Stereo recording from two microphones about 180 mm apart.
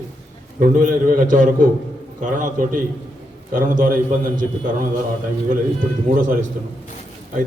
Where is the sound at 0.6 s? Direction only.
45° right (ahead or behind).